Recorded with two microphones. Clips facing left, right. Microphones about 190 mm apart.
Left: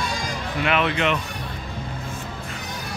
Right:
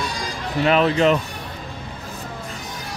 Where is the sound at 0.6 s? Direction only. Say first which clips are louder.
Right 6 dB; 35° right (ahead or behind).